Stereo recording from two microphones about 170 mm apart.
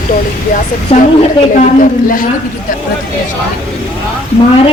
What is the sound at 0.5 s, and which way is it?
Speech, 40° left (ahead or behind).